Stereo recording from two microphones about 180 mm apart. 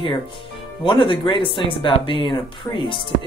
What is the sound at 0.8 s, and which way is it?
Speech, 30° left (ahead or behind).